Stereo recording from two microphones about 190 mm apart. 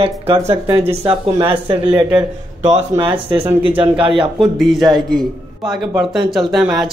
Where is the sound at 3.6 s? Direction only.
25° right (ahead or behind).